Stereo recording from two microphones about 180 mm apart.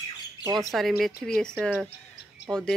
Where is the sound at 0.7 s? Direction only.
Centre (ahead or behind).